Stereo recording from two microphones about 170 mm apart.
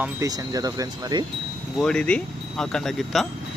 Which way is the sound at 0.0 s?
20° right (ahead or behind).